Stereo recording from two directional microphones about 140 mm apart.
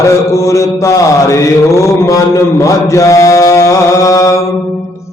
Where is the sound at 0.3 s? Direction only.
20° left (ahead or behind).